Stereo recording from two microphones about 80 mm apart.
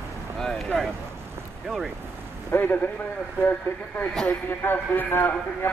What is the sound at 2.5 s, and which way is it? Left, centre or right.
Speech, left.